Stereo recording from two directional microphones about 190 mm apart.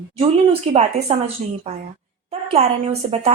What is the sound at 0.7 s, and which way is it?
Speech, 35° right (ahead or behind).